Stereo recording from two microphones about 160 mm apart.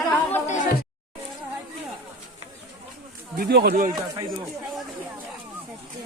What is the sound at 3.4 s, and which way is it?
Speech, 85° right.